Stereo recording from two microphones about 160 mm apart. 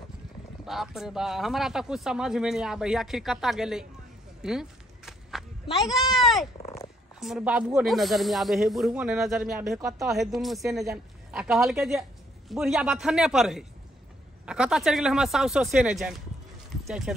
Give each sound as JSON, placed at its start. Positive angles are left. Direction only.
{"t": 0.7, "sound": "speech", "side_deg": 0}
{"t": 4.4, "sound": "a sound", "side_deg": -5}
{"t": 5.8, "sound": "speech", "side_deg": 0}
{"t": 9.8, "sound": "speech", "side_deg": -20}
{"t": 10.0, "sound": "speech", "side_deg": 0}